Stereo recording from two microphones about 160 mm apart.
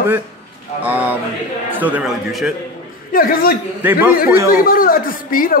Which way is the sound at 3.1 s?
60° left (ahead or behind).